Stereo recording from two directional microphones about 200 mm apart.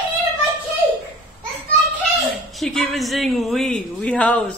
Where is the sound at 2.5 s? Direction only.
Centre (ahead or behind).